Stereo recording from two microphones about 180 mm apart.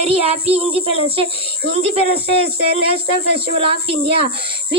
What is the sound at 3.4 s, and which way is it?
Speech, 30° right (ahead or behind).